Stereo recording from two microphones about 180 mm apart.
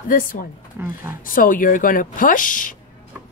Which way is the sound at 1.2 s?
50° left (ahead or behind).